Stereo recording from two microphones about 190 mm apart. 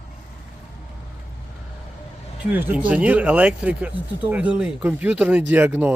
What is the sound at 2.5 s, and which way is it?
Speech, 10° right (ahead or behind).